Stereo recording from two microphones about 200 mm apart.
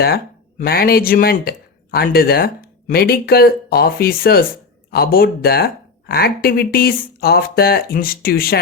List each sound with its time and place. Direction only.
0.6 s speech: 50° left (ahead or behind)